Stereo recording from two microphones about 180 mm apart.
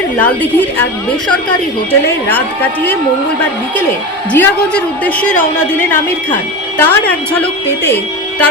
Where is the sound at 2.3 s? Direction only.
10° left (ahead or behind).